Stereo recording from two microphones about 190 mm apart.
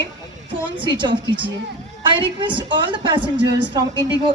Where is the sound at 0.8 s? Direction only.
25° right (ahead or behind).